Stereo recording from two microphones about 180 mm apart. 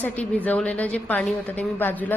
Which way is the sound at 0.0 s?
10° left (ahead or behind).